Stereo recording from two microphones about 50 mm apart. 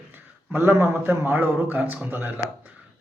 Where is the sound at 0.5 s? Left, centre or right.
Right.